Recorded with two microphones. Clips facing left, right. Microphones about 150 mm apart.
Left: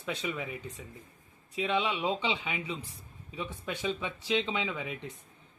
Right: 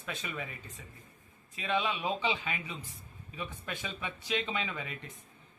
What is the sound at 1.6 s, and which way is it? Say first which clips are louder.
Speech: left 2 dB; 20° left (ahead or behind).